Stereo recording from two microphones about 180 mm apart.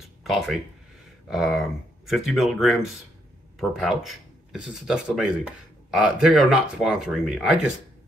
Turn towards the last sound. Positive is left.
turn(degrees=-5)  # may be behind; listen again after turning